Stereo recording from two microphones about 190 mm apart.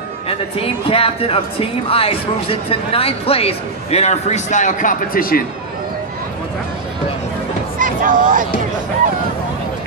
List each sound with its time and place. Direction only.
0.3 s speech: 30° left (ahead or behind); by 5.4 s 50° left (ahead or behind)
7.8 s speech: 45° right (ahead or behind)